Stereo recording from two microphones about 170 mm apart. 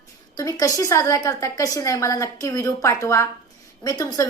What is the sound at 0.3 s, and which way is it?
A woman's voice, 20° left (ahead or behind).